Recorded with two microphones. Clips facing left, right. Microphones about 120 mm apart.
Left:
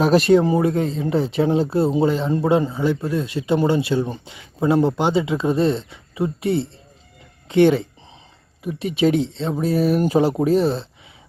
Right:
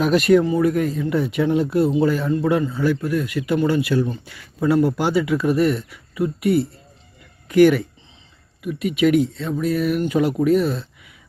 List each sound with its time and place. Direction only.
0.0 s speech: 30° left (ahead or behind)